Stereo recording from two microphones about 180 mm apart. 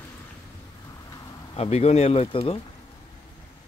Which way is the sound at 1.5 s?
35° left (ahead or behind).